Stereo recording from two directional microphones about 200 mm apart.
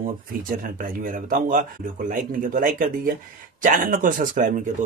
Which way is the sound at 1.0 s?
45° right (ahead or behind).